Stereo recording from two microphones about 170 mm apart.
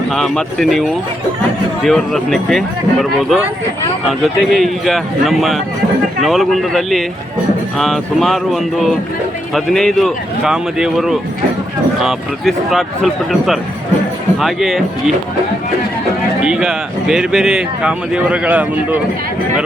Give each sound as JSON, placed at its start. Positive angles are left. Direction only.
{"t": 0.1, "sound": "speech", "side_deg": 5}
{"t": 9.6, "sound": "speech", "side_deg": 0}
{"t": 16.4, "sound": "speech", "side_deg": -5}